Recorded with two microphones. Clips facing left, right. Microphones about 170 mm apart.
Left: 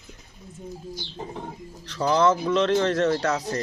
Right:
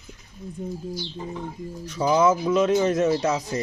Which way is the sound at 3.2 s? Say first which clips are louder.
Right 1 dB; 20° right (ahead or behind).